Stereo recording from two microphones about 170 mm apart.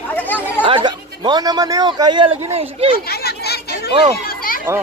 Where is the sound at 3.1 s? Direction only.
70° left (ahead or behind).